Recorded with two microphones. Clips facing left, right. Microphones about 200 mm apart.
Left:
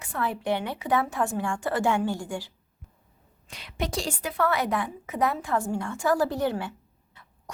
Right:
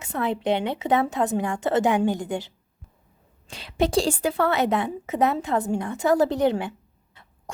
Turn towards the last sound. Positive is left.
turn(degrees=-20)  # may be behind; listen again after turning